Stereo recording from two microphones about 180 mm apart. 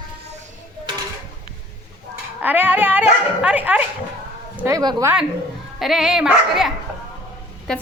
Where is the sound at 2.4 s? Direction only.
10° right (ahead or behind).